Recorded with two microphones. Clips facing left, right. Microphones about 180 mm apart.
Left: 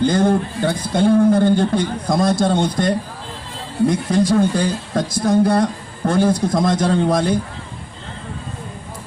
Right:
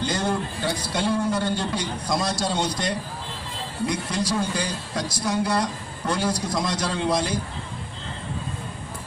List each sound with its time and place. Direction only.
0.0 s a man's voice: 50° left (ahead or behind)